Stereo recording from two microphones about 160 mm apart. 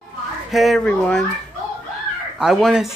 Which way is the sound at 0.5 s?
Centre (ahead or behind).